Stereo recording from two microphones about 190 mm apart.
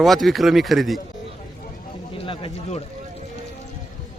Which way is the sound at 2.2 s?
30° left (ahead or behind).